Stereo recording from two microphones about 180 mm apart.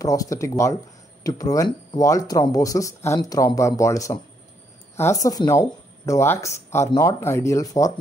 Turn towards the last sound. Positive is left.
turn(degrees=20)  # may be behind; listen again after turning